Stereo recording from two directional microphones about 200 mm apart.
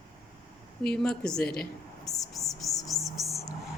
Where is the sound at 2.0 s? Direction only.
15° left (ahead or behind).